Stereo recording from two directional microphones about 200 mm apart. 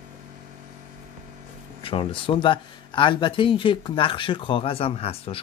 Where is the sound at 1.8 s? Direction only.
25° left (ahead or behind).